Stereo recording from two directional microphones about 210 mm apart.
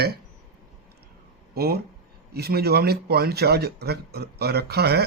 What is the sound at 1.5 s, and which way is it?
Speech, 45° right (ahead or behind).